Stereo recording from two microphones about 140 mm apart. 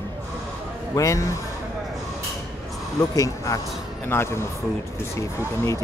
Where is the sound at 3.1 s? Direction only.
25° left (ahead or behind).